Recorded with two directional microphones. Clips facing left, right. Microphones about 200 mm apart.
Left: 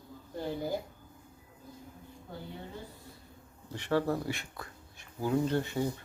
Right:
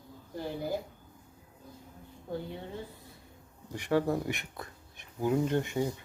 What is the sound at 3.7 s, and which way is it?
Speech, 15° right (ahead or behind).